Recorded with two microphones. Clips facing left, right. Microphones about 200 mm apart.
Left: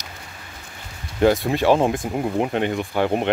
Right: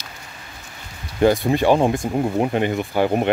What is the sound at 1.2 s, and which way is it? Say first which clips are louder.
Speech: right 1 dB; centre (ahead or behind).